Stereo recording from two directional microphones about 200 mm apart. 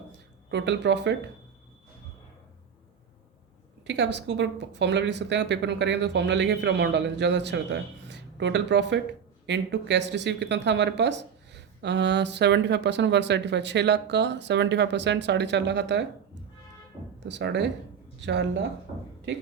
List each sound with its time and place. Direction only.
0.5 s speech: 60° right (ahead or behind)
3.8 s speech: 60° right (ahead or behind)